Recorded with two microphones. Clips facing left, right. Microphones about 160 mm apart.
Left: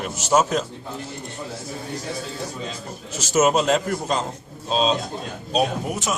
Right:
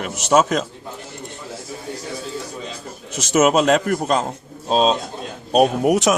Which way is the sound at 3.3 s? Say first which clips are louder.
Right 3 dB; 70° right (ahead or behind).